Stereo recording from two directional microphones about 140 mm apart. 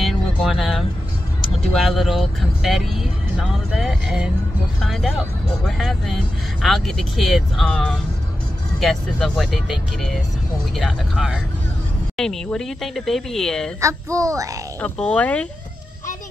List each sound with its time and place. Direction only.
0.0 s music: centre (ahead or behind)
1.8 s speech: centre (ahead or behind)
13.7 s a child's voice: 20° right (ahead or behind)
14.8 s speech: 10° left (ahead or behind)